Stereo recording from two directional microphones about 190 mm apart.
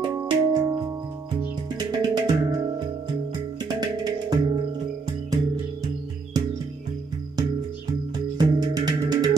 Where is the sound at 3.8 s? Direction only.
20° right (ahead or behind).